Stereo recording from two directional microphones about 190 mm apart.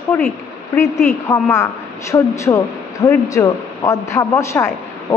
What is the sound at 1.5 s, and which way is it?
A woman's voice, 15° left (ahead or behind).